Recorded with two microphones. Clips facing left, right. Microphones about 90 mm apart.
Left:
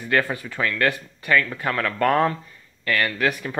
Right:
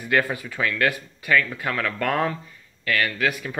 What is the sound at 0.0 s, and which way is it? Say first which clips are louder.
Speech: even; 10° right (ahead or behind).